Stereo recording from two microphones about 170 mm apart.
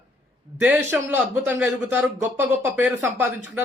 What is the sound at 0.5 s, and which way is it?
A man's voice, 10° right (ahead or behind).